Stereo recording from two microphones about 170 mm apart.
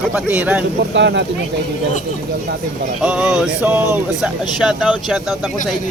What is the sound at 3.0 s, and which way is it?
Speech, 5° right (ahead or behind).